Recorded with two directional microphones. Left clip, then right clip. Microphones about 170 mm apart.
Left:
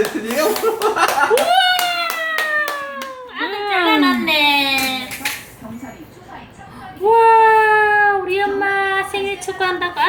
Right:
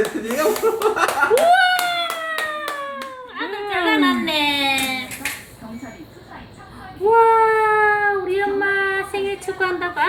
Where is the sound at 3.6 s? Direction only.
5° left (ahead or behind).